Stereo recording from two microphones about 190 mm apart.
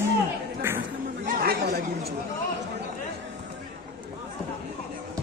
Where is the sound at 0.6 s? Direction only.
15° right (ahead or behind).